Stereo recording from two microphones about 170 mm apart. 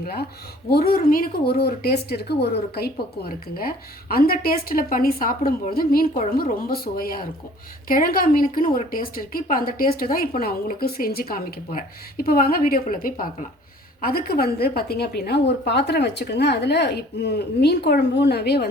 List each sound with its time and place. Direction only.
0.7 s a woman's voice: 65° left (ahead or behind)